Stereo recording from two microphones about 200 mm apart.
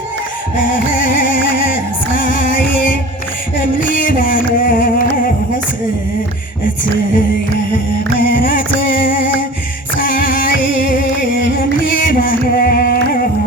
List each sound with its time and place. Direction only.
2.1 s music: 45° left (ahead or behind)
3.8 s music: 45° left (ahead or behind)
8.2 s music: 45° left (ahead or behind)